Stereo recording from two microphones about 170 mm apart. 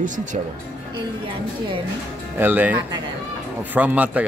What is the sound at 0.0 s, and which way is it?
Speech, 50° right (ahead or behind).